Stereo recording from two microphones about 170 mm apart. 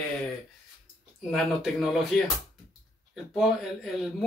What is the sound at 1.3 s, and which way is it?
Speech, centre (ahead or behind).